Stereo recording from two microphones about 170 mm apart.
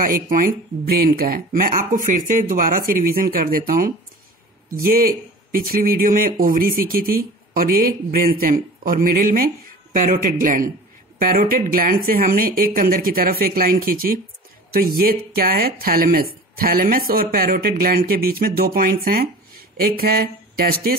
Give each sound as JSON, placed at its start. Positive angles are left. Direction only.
{"t": 0.0, "sound": "speech", "side_deg": -55}